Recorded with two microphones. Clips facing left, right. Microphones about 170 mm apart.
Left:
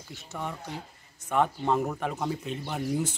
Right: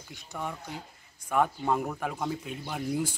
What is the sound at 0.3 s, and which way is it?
A man's voice, centre (ahead or behind).